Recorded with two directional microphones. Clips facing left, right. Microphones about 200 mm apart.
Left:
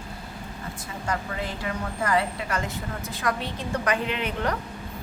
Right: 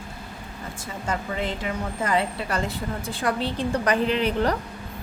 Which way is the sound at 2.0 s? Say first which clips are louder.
Even; 25° right (ahead or behind).